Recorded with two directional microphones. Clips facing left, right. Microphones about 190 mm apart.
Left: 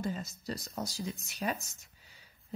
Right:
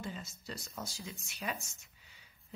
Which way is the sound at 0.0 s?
40° left (ahead or behind).